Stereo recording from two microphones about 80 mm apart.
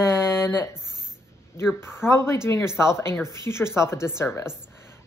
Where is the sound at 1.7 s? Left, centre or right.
Left.